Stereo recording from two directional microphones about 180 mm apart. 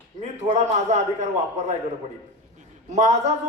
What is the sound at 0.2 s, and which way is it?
A man's voice, 40° right (ahead or behind).